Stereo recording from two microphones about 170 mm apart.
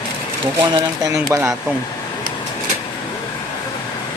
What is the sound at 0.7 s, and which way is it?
Speech, 20° right (ahead or behind).